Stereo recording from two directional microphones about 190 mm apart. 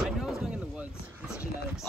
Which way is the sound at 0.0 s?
Centre (ahead or behind).